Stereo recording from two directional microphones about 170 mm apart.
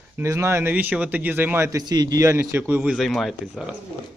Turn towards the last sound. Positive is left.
turn(degrees=0)  # may be behind; listen again after turning